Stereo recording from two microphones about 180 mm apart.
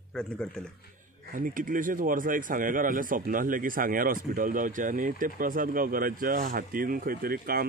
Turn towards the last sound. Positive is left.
turn(degrees=-55)  # may be behind; listen again after turning